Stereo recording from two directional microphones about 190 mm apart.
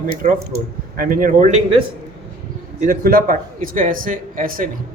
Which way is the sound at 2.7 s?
50° right (ahead or behind).